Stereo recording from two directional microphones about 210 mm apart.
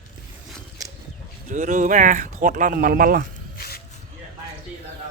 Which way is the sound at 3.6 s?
45° left (ahead or behind).